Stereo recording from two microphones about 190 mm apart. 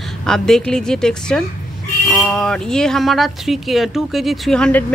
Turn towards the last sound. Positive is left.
turn(degrees=5)  # may be behind; listen again after turning